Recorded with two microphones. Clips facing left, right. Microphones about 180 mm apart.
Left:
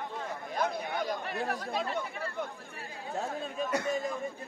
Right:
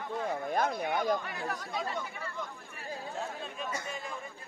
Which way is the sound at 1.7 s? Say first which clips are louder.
Left 3 dB; 60° left (ahead or behind).